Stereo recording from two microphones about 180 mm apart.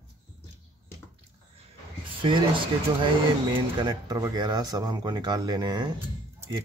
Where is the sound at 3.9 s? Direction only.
20° right (ahead or behind).